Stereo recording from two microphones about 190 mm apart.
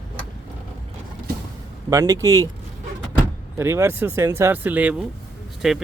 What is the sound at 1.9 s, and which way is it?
Speech, 15° right (ahead or behind).